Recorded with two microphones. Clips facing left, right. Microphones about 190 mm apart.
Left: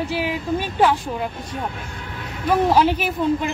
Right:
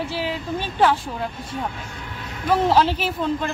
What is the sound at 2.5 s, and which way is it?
Speech, 15° left (ahead or behind).